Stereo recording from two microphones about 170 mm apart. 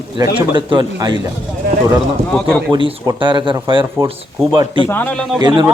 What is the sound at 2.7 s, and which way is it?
A man's voice, 30° right (ahead or behind).